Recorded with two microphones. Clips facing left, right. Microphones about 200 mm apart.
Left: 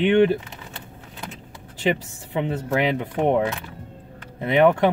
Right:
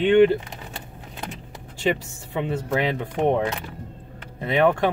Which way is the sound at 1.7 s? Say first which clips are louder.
Left 1 dB; 20° left (ahead or behind).